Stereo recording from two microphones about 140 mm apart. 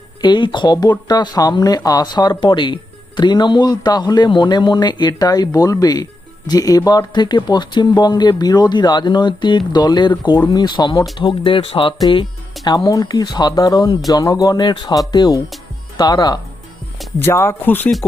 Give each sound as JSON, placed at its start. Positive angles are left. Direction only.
{"t": 0.2, "sound": "speech", "side_deg": 35}
{"t": 17.2, "sound": "speech", "side_deg": 15}